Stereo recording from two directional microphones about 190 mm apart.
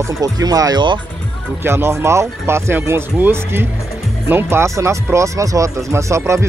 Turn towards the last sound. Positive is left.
turn(degrees=-15)  # may be behind; listen again after turning